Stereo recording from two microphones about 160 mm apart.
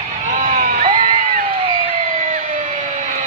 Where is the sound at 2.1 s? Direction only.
50° right (ahead or behind).